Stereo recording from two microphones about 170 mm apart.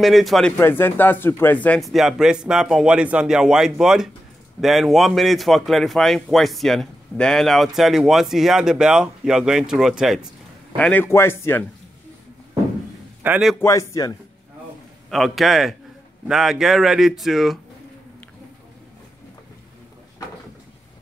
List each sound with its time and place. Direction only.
0.0 s a man's voice: centre (ahead or behind)
0.6 s a man's voice: 15° left (ahead or behind)
10.8 s speech: 10° left (ahead or behind)
13.2 s a man's voice: 5° right (ahead or behind)
13.6 s speech: 20° left (ahead or behind)
15.0 s a man's voice: centre (ahead or behind)